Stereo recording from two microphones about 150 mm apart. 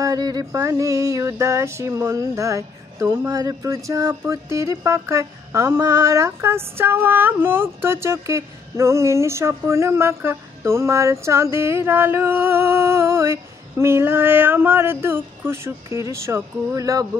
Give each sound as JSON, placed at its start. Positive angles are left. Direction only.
{"t": 0.0, "sound": "music", "side_deg": -25}